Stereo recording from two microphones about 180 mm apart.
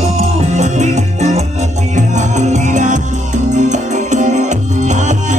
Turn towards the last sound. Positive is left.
turn(degrees=-40)  # may be behind; listen again after turning